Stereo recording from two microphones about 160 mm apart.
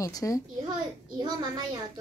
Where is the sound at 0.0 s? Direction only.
20° left (ahead or behind).